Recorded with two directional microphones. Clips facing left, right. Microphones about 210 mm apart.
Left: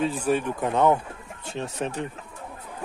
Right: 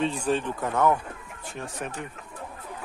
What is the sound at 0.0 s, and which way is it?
Speech, 5° left (ahead or behind).